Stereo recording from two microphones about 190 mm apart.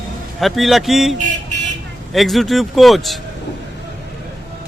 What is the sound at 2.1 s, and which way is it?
Speech, centre (ahead or behind).